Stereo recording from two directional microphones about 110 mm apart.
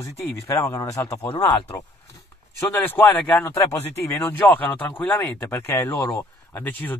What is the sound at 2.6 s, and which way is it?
Speech, 20° left (ahead or behind).